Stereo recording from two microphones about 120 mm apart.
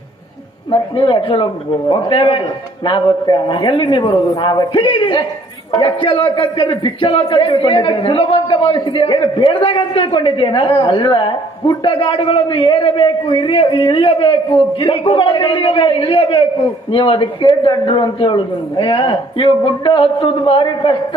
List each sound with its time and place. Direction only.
0.7 s a man's voice: 45° left (ahead or behind)